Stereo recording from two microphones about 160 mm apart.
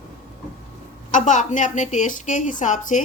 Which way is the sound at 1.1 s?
50° left (ahead or behind).